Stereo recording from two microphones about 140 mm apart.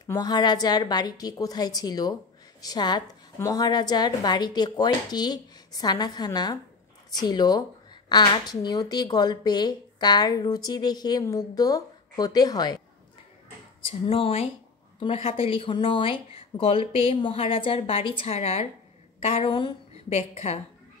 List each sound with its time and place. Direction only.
0.0 s speech: 25° left (ahead or behind)
14.0 s speech: 40° left (ahead or behind)
20.1 s a woman's voice: 55° left (ahead or behind)